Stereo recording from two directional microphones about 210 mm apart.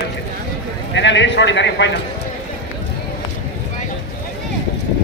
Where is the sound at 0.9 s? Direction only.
60° left (ahead or behind).